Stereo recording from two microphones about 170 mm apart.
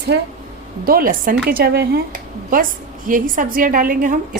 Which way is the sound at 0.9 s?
55° right (ahead or behind).